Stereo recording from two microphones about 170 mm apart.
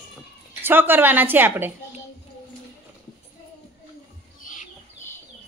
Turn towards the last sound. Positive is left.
turn(degrees=50)  # may be behind; listen again after turning